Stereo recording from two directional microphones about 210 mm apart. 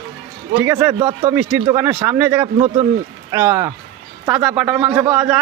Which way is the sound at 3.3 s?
10° right (ahead or behind).